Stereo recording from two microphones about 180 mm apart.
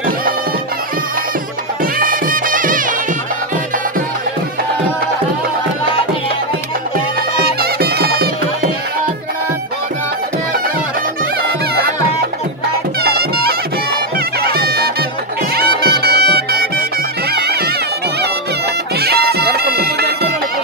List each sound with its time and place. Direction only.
2.0 s music: 50° right (ahead or behind)
7.4 s music: 60° right (ahead or behind)
13.0 s music: 60° right (ahead or behind)
18.9 s bagpipes: 60° right (ahead or behind)